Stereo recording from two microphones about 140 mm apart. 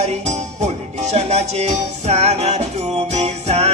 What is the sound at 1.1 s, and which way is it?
Music, 50° right (ahead or behind).